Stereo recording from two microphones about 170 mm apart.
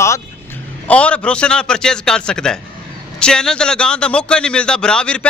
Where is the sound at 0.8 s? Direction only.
5° left (ahead or behind).